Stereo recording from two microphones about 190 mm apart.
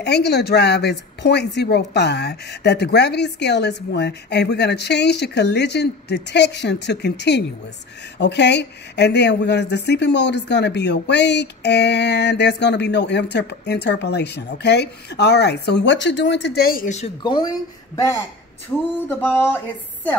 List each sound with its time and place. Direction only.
0.0 s speech: 60° left (ahead or behind); by 17.1 s 40° left (ahead or behind)
17.2 s speech: 20° left (ahead or behind)